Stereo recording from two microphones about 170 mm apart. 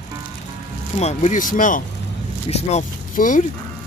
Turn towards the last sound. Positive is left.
turn(degrees=50)  # may be behind; listen again after turning